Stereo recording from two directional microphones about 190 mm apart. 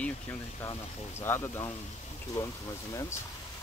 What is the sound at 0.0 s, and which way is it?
Speech, 10° left (ahead or behind).